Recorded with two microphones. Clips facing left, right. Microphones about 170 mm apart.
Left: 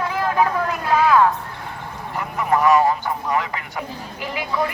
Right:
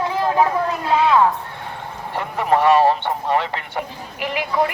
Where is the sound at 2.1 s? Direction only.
30° right (ahead or behind).